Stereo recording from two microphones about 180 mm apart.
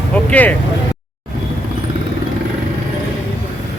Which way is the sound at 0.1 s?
10° left (ahead or behind).